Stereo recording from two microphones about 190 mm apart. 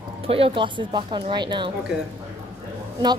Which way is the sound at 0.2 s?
30° right (ahead or behind).